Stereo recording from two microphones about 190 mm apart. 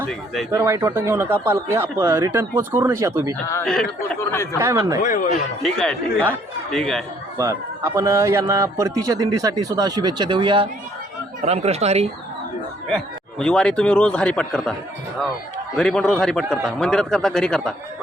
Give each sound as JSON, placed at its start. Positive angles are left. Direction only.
{"t": 0.0, "sound": "a man's voice", "side_deg": 5}
{"t": 0.5, "sound": "speech", "side_deg": -15}
{"t": 3.4, "sound": "a man's voice", "side_deg": 15}
{"t": 3.7, "sound": "a man's voice", "side_deg": 5}
{"t": 4.6, "sound": "speech", "side_deg": -15}
{"t": 5.0, "sound": "speech", "side_deg": 45}
{"t": 5.6, "sound": "a man's voice", "side_deg": 5}
{"t": 7.3, "sound": "a man's voice", "side_deg": -15}
{"t": 13.4, "sound": "a man's voice", "side_deg": 5}